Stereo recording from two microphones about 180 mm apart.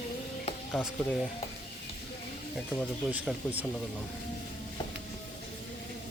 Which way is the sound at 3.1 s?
10° right (ahead or behind).